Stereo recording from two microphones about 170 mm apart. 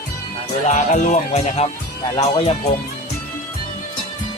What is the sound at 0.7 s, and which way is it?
Music, 45° left (ahead or behind).